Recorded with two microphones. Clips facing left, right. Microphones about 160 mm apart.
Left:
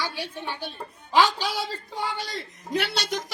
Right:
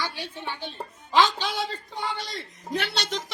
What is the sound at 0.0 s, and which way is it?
A woman's voice, 15° left (ahead or behind).